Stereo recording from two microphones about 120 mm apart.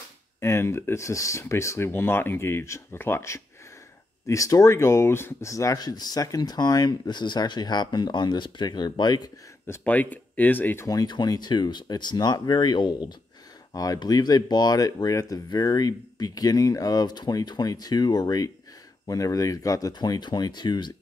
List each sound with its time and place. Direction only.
0.4 s speech: 20° left (ahead or behind)
9.7 s speech: 15° left (ahead or behind)
10.9 s speech: 35° left (ahead or behind)